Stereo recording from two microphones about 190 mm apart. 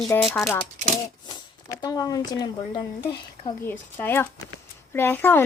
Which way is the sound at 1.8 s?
20° left (ahead or behind).